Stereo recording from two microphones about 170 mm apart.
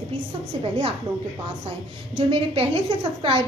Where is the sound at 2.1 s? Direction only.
35° right (ahead or behind).